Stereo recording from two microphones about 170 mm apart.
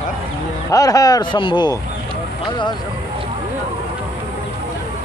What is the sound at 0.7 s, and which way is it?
Speech, 20° left (ahead or behind).